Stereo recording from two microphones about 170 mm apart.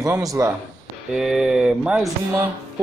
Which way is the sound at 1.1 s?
5° right (ahead or behind).